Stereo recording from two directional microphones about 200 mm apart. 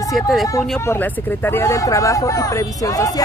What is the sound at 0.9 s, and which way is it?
Speech, 10° left (ahead or behind).